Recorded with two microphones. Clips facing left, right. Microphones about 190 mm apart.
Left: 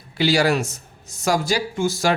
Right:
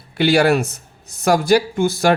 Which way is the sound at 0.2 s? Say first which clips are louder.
Right 4 dB; 60° right (ahead or behind).